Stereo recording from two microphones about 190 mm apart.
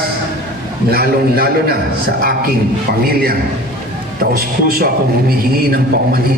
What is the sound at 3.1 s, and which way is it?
A man's voice, 50° right (ahead or behind).